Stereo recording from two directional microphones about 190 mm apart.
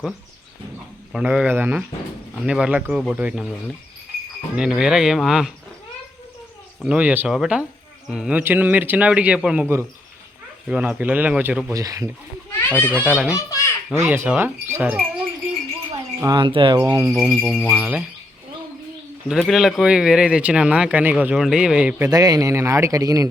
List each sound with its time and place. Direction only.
1.1 s a man's voice: 5° right (ahead or behind)
4.5 s speech: 5° right (ahead or behind)
6.8 s a man's voice: 10° right (ahead or behind)
11.7 s a man's voice: 20° right (ahead or behind)
12.5 s children playing: 10° left (ahead or behind)
13.0 s speech: 5° right (ahead or behind)
13.3 s children playing: 15° left (ahead or behind)
13.9 s a man's voice: 15° right (ahead or behind)
16.2 s speech: 25° right (ahead or behind)
16.8 s a man's voice: 15° right (ahead or behind)
17.3 s speech: centre (ahead or behind)
19.3 s speech: centre (ahead or behind); by 23.3 s 15° right (ahead or behind)